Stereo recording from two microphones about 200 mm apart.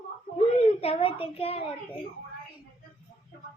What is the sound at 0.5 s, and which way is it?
A woman's voice, 30° left (ahead or behind).